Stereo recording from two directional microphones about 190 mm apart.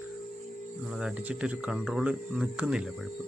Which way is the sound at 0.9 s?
5° right (ahead or behind).